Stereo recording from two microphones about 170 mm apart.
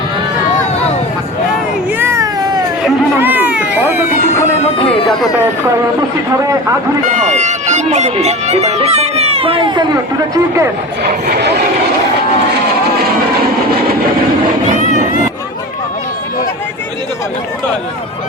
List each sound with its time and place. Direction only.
2.0 s baby cry: 15° right (ahead or behind)
3.2 s cat: 10° right (ahead or behind)
4.8 s music: 35° left (ahead or behind)
5.0 s speech: centre (ahead or behind)
7.1 s speech: 45° right (ahead or behind); by 10.7 s 20° right (ahead or behind)
11.0 s speech: 65° right (ahead or behind)